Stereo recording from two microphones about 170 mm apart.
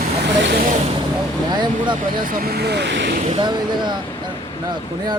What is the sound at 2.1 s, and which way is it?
Speech, 55° right (ahead or behind).